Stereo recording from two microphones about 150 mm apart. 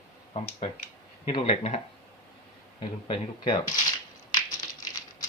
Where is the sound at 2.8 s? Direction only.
35° left (ahead or behind).